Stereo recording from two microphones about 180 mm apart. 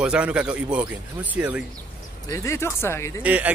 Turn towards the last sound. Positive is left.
turn(degrees=-10)  # may be behind; listen again after turning